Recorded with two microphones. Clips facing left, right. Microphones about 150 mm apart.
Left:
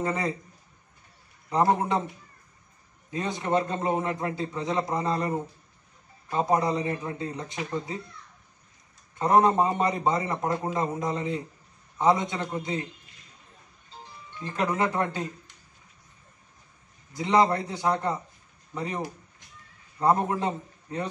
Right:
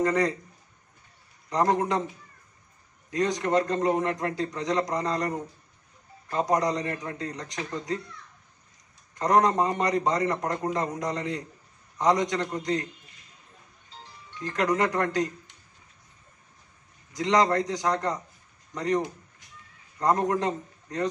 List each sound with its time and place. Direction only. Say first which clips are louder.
0.0 s a man's voice: right 5 dB; 5° left (ahead or behind)
1.5 s a man's voice: left 1 dB; 5° left (ahead or behind)
3.1 s a man's voice: right 4 dB; 25° left (ahead or behind)
3.5 s a man's voice: right 1 dB; 5° left (ahead or behind)
9.2 s a man's voice: left 1 dB; 5° left (ahead or behind)
14.4 s a man's voice: right 2 dB; 5° left (ahead or behind)
17.2 s a man's voice: even; 5° left (ahead or behind)